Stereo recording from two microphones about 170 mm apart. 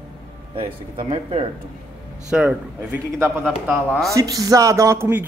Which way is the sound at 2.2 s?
5° right (ahead or behind).